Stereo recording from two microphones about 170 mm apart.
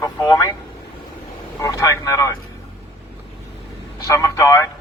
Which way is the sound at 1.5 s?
20° left (ahead or behind).